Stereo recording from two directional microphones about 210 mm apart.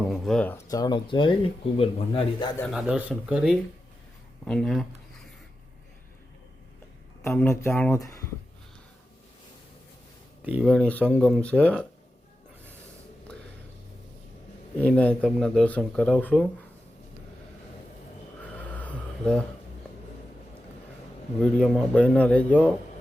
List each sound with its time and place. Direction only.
0.1 s speech: 5° left (ahead or behind); by 2.6 s 25° left (ahead or behind)
2.6 s speech: centre (ahead or behind)
7.3 s speech: 10° left (ahead or behind)
10.4 s speech: 5° right (ahead or behind)
14.9 s speech: 5° left (ahead or behind)
18.4 s a sound: 5° left (ahead or behind)
21.4 s speech: centre (ahead or behind)